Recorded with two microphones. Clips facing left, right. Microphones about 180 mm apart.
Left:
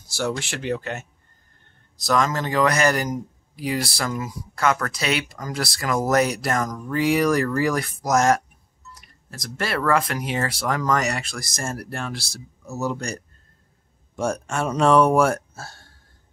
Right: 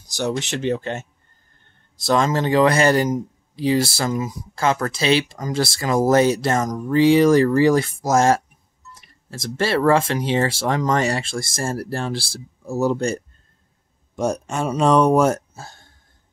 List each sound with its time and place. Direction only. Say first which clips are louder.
0.1 s speech: right 3 dB; 20° right (ahead or behind)
14.1 s speech: right 2 dB; 20° right (ahead or behind)